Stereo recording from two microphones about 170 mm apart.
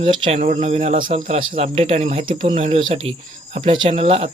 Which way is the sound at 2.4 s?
50° right (ahead or behind).